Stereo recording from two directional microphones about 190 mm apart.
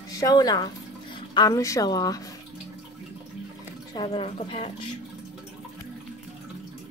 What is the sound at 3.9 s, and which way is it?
Speech, 25° left (ahead or behind).